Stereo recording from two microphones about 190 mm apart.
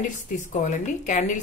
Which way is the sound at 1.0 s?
40° left (ahead or behind).